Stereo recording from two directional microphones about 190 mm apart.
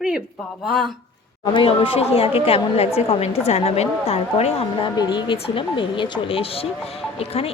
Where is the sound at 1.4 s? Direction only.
25° left (ahead or behind).